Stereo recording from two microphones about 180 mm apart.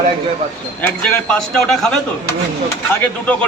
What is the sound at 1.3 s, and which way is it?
Speech, centre (ahead or behind).